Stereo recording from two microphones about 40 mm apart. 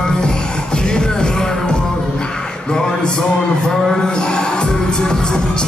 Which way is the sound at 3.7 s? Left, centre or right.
Centre.